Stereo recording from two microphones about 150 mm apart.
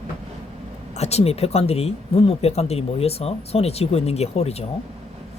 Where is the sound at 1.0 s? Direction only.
45° left (ahead or behind).